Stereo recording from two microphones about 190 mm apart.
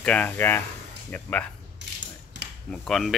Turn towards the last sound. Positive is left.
turn(degrees=5)  # may be behind; listen again after turning